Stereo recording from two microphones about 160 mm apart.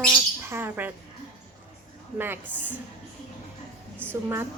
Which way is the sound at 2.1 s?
15° right (ahead or behind).